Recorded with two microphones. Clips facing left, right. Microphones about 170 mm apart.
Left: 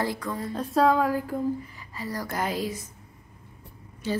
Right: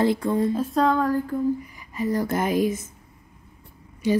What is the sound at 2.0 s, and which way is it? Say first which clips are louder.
Speech: right 7 dB; 20° right (ahead or behind).